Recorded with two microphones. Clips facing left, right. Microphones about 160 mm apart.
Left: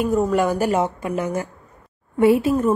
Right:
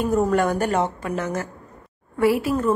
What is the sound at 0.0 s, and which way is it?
A woman's voice, 5° left (ahead or behind).